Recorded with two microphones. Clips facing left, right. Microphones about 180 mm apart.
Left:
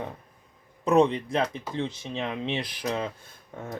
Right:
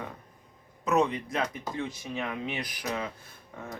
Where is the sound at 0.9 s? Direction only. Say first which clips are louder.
Left 5 dB; 30° left (ahead or behind).